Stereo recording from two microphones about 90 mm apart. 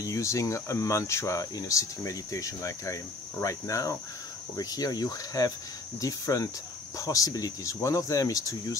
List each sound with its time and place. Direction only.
0.0 s speech: 35° left (ahead or behind)